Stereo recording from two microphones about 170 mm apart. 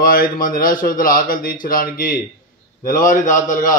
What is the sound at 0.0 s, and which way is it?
A man's voice, 55° left (ahead or behind).